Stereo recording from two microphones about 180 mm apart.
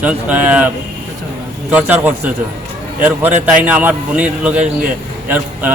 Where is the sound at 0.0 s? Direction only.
10° right (ahead or behind).